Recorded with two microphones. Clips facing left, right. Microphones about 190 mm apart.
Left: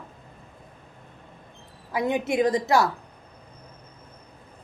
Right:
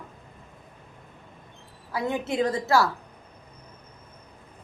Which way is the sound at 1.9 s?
15° left (ahead or behind).